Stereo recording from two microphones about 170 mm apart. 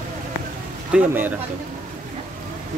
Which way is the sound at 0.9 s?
10° right (ahead or behind).